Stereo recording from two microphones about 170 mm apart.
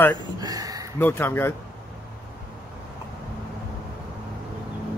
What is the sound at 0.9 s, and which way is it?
Speech, 10° left (ahead or behind).